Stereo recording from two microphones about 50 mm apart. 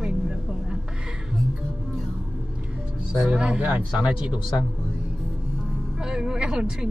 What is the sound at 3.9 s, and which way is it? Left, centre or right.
Speech, centre.